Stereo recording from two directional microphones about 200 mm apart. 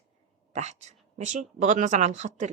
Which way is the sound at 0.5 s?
35° right (ahead or behind).